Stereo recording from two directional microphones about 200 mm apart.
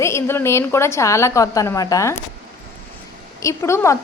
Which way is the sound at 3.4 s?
15° left (ahead or behind).